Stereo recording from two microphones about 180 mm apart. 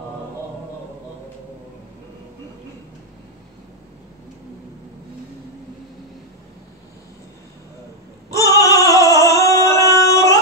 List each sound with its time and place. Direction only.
8.3 s singing: 20° left (ahead or behind)